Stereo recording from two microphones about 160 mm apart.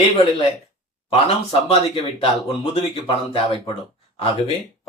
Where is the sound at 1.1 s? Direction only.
35° left (ahead or behind).